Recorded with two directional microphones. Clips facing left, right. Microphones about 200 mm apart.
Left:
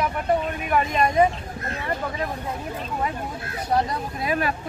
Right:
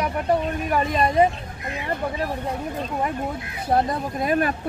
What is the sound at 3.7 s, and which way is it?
Speech, 45° right (ahead or behind).